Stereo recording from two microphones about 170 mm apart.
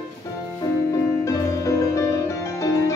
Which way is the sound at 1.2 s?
20° left (ahead or behind).